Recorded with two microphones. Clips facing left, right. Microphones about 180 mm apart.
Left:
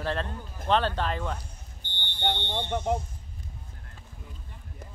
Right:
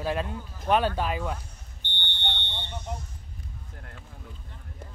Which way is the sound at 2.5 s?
75° left (ahead or behind).